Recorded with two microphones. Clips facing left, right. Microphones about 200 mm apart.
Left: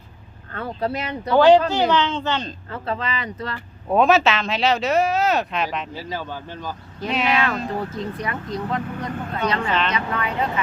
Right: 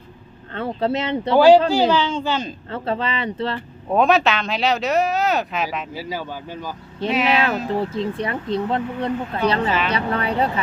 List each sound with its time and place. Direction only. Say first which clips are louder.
0.5 s speech: right 4 dB; 25° right (ahead or behind)
1.7 s a child's voice: right 2 dB; 10° right (ahead or behind)
2.6 s speech: right 4 dB; 30° right (ahead or behind)
3.8 s speech: even; centre (ahead or behind)
7.7 s speech: right 4 dB; 25° right (ahead or behind)
9.6 s speech: right 1 dB; 5° right (ahead or behind)
9.9 s speech: right 3 dB; 35° right (ahead or behind)